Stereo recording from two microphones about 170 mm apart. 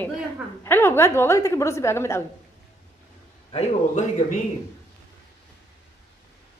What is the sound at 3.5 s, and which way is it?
Speech, 45° left (ahead or behind).